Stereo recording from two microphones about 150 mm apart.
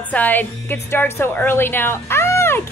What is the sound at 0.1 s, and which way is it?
A woman's voice, 10° left (ahead or behind).